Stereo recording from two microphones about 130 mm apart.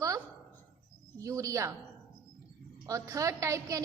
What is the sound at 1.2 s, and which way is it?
Speech, 25° right (ahead or behind).